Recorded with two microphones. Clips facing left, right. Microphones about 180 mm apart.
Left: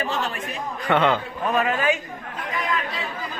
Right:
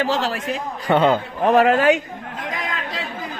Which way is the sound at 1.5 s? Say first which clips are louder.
Right 8 dB; 70° right (ahead or behind).